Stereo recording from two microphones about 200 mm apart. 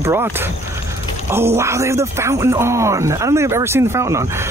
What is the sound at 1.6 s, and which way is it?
Speech, 15° right (ahead or behind).